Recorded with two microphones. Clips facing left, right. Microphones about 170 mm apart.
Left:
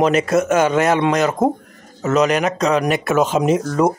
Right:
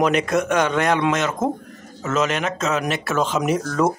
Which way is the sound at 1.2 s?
40° left (ahead or behind).